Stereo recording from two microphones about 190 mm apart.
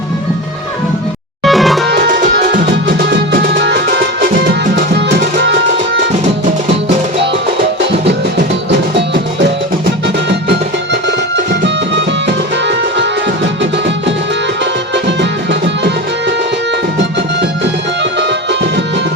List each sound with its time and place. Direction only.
1.5 s music: centre (ahead or behind)
1.9 s music: 55° right (ahead or behind)
3.6 s music: 60° right (ahead or behind)